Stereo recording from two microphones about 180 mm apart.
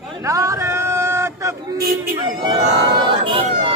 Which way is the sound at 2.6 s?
70° right (ahead or behind).